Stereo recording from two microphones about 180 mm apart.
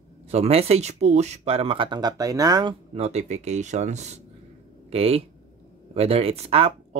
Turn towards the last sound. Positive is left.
turn(degrees=-35)  # may be behind; listen again after turning